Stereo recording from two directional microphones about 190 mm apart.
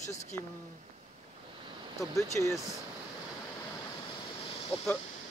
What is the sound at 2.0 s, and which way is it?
Speech, 15° left (ahead or behind).